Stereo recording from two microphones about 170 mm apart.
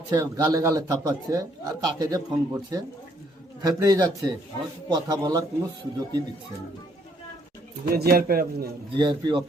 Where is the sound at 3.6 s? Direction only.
20° right (ahead or behind).